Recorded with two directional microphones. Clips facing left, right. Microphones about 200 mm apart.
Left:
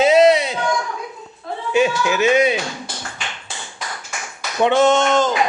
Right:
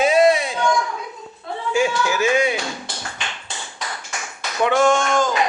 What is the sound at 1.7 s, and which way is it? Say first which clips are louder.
Speech: left 3 dB; 20° left (ahead or behind).